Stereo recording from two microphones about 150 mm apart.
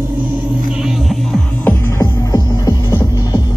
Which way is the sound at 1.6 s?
25° left (ahead or behind).